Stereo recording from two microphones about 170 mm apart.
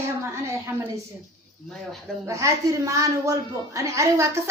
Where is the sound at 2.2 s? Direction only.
15° right (ahead or behind).